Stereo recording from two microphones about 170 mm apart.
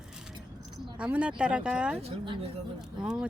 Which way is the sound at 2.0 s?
35° right (ahead or behind).